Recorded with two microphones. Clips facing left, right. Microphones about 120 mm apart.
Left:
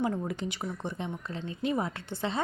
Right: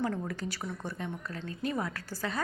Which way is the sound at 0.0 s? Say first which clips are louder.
Left 2 dB; 20° left (ahead or behind).